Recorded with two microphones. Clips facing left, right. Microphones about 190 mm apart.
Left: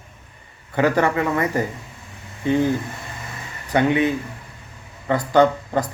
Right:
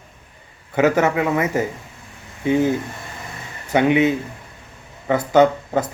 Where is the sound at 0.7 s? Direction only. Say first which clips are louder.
Right 2 dB; 20° right (ahead or behind).